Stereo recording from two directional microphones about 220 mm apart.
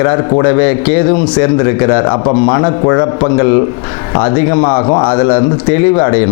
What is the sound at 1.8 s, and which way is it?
A man's voice, 20° left (ahead or behind).